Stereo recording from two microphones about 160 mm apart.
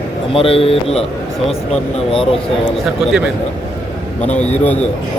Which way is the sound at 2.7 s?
Centre (ahead or behind).